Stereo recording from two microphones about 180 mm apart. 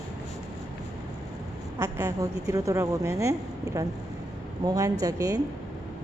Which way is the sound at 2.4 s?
20° right (ahead or behind).